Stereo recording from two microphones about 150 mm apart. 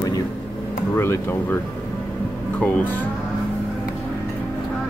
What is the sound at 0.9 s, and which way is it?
Speech, 15° left (ahead or behind).